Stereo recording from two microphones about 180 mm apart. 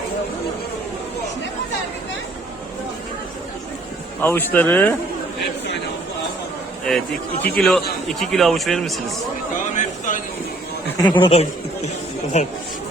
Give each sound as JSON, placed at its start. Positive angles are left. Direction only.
{"t": 4.2, "sound": "speech", "side_deg": 10}
{"t": 6.9, "sound": "speech", "side_deg": 0}
{"t": 9.6, "sound": "a sound", "side_deg": 45}
{"t": 10.9, "sound": "speech", "side_deg": 25}